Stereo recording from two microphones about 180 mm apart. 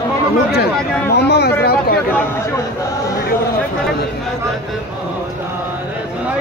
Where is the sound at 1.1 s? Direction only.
65° left (ahead or behind).